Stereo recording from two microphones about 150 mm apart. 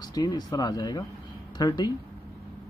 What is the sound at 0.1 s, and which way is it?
Speech, 30° left (ahead or behind).